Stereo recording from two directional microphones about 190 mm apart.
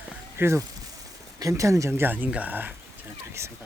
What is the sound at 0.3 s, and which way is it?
Speech, 15° right (ahead or behind).